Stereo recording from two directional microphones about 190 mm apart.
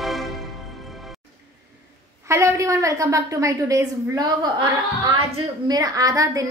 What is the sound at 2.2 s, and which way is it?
A woman's voice, 15° right (ahead or behind).